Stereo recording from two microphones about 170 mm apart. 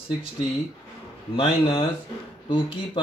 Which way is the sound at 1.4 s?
30° left (ahead or behind).